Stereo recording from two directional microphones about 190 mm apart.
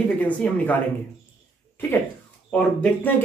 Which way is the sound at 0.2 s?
5° left (ahead or behind).